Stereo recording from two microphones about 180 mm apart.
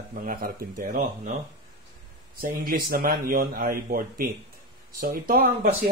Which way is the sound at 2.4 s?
55° right (ahead or behind).